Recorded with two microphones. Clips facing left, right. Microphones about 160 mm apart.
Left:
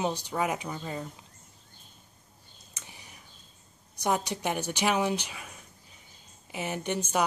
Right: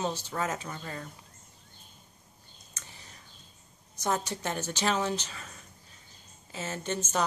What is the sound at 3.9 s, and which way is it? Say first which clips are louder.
Speech: left 2 dB; 15° left (ahead or behind).